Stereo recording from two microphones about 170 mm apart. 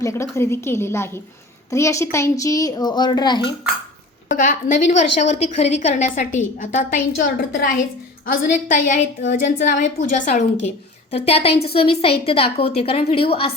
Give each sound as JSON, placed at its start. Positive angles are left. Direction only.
{"t": 0.0, "sound": "a woman's voice", "side_deg": 15}
{"t": 4.4, "sound": "a woman's voice", "side_deg": 45}
{"t": 8.3, "sound": "a woman's voice", "side_deg": 50}